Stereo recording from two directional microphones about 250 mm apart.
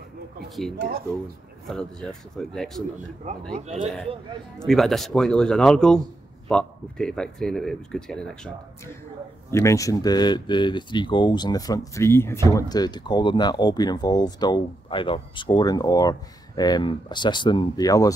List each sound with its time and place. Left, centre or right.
0.7 s speech: right
1.7 s speech: centre
3.5 s speech: right
4.6 s speech: centre
9.5 s speech: centre